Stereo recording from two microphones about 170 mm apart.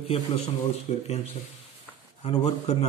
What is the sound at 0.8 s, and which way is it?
A man's voice, 40° left (ahead or behind).